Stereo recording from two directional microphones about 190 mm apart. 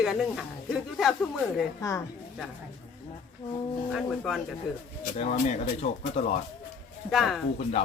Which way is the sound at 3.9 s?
Centre (ahead or behind).